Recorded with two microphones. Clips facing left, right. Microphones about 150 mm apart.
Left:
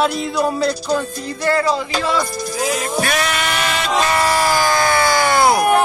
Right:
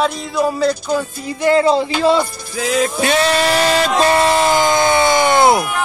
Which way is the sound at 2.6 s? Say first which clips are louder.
Right 5 dB; 90° right.